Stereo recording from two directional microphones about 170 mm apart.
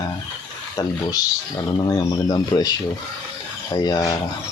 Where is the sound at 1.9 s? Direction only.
20° left (ahead or behind).